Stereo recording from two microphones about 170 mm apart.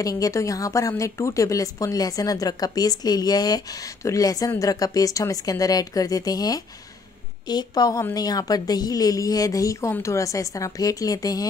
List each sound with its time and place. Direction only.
0.0 s a woman's voice: 20° left (ahead or behind)